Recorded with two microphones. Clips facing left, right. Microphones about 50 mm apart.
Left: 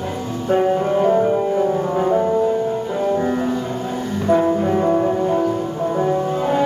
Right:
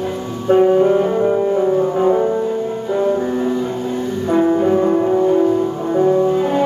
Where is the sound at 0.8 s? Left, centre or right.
Centre.